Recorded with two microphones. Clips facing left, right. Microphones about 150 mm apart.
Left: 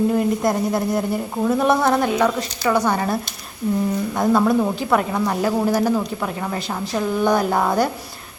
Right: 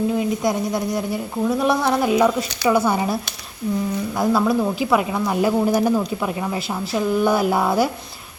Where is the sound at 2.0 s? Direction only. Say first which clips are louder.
Right 2 dB; 10° right (ahead or behind).